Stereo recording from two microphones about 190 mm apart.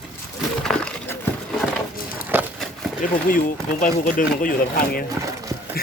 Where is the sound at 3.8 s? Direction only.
45° left (ahead or behind).